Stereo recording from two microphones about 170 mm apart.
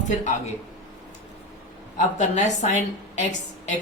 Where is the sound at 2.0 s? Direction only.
45° left (ahead or behind).